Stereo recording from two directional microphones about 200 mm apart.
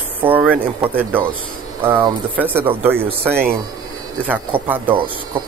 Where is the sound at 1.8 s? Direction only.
10° right (ahead or behind).